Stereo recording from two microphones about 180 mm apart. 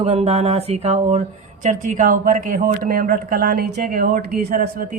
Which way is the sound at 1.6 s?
45° right (ahead or behind).